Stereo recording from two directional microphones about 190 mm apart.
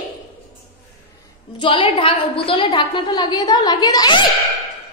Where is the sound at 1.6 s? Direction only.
30° left (ahead or behind).